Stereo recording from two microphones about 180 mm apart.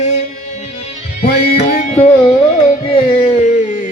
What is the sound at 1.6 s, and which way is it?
Music, 40° left (ahead or behind).